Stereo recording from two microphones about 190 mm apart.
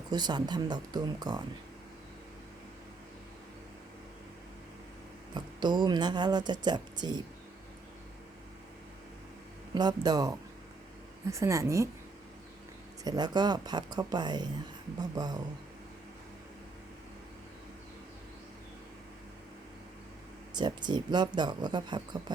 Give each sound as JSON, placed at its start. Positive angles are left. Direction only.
{"t": 0.1, "sound": "speech", "side_deg": -20}
{"t": 5.3, "sound": "speech", "side_deg": -25}
{"t": 9.7, "sound": "a woman's voice", "side_deg": -20}
{"t": 13.1, "sound": "speech", "side_deg": -20}
{"t": 20.5, "sound": "speech", "side_deg": -20}